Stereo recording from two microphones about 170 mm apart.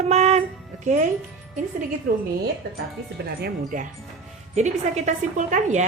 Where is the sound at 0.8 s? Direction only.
45° right (ahead or behind).